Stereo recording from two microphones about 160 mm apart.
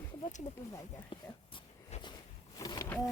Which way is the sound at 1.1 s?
35° left (ahead or behind).